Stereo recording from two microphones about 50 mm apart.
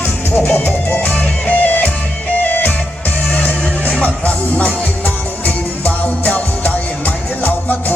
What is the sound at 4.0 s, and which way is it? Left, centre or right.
Music, left.